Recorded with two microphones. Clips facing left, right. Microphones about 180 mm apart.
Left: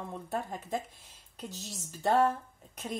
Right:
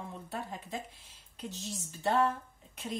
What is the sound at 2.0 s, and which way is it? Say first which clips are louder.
Speech: left 3 dB; 40° left (ahead or behind).